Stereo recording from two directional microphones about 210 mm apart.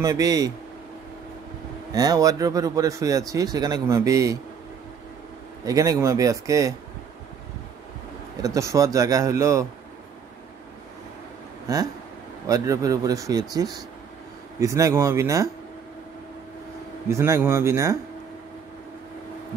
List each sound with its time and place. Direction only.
0.0 s speech: 15° right (ahead or behind)
2.0 s speech: 15° right (ahead or behind)
5.7 s speech: 15° right (ahead or behind)
8.4 s speech: 15° right (ahead or behind)
11.6 s speech: 15° right (ahead or behind)
17.1 s speech: 15° right (ahead or behind)